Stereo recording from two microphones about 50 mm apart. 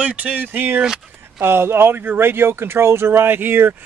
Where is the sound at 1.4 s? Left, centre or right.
Right.